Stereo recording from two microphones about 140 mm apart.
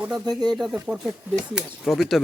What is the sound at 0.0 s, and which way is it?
Speech, 5° right (ahead or behind).